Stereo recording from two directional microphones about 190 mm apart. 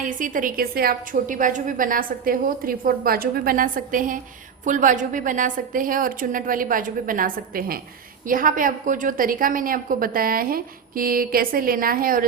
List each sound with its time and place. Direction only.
0.0 s a woman's voice: 45° right (ahead or behind)